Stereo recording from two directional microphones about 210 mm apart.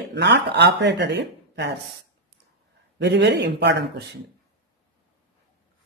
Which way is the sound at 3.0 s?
55° right (ahead or behind).